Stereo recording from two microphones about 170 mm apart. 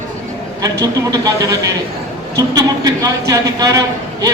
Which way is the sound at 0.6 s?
20° right (ahead or behind).